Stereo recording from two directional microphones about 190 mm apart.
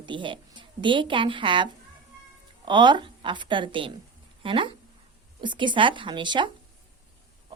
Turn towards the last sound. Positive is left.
turn(degrees=-25)  # may be behind; listen again after turning